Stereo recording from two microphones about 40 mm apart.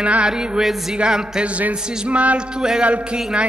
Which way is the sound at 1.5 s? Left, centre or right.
Right.